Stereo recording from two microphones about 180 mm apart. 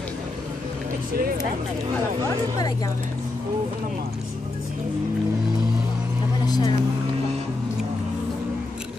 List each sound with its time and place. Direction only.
6.4 s vehicle: 20° left (ahead or behind)